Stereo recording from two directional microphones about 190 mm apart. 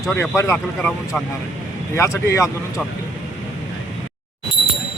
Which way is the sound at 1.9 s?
15° left (ahead or behind).